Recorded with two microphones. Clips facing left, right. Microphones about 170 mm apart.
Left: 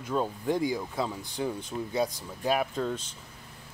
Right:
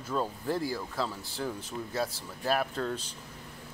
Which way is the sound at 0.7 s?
15° left (ahead or behind).